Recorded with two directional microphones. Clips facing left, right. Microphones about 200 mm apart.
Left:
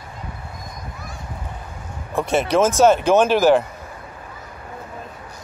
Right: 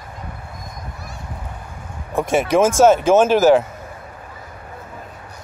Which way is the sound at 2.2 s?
10° right (ahead or behind).